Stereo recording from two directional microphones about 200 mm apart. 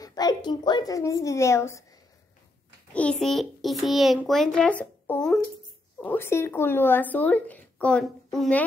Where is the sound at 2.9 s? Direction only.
5° left (ahead or behind).